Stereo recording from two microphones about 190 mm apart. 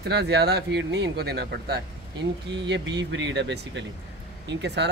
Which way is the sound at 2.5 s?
70° right (ahead or behind).